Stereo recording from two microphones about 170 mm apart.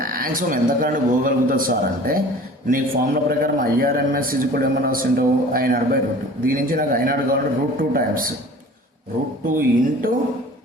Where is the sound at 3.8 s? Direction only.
55° right (ahead or behind).